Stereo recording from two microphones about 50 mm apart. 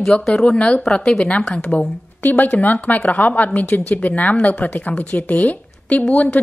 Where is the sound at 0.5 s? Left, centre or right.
Left.